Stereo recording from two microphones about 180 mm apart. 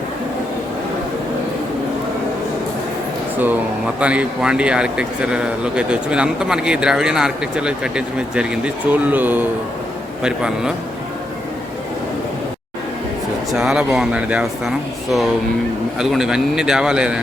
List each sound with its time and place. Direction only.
3.3 s speech: 10° right (ahead or behind)
13.5 s speech: 5° right (ahead or behind)
16.0 s speech: centre (ahead or behind)